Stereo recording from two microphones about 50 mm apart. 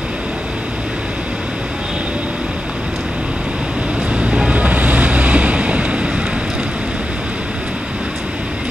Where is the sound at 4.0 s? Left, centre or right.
Right.